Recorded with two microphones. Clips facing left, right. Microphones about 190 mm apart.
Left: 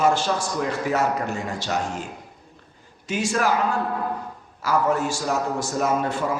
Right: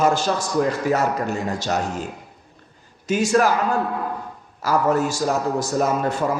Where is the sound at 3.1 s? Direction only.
40° right (ahead or behind).